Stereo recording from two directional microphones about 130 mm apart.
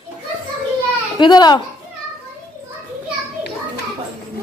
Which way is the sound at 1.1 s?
35° left (ahead or behind).